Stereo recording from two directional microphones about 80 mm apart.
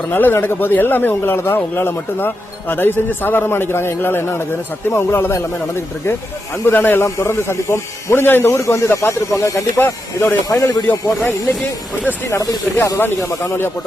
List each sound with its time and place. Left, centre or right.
0.1 s speech: left
6.7 s speech: left
9.8 s speech: left
10.6 s speech: left
10.8 s speech: left
13.0 s speech: left